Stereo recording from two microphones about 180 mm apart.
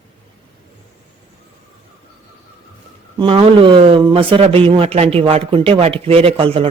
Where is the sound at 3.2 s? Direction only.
30° right (ahead or behind).